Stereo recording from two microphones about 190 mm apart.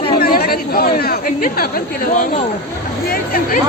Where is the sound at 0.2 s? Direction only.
50° left (ahead or behind).